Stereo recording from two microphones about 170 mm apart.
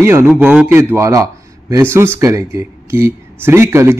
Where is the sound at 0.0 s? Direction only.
15° right (ahead or behind).